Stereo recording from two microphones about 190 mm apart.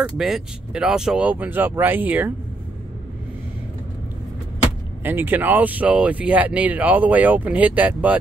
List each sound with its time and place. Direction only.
0.2 s speech: 5° right (ahead or behind)
5.0 s speech: 10° right (ahead or behind)